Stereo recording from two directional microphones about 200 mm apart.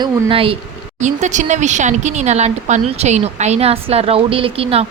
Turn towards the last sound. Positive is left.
turn(degrees=-30)  # may be behind; listen again after turning